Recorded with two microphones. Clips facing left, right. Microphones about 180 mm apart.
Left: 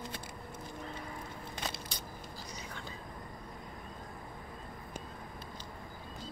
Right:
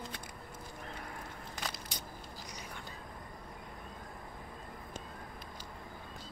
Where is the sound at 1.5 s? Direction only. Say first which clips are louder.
Left 2 dB; 25° left (ahead or behind).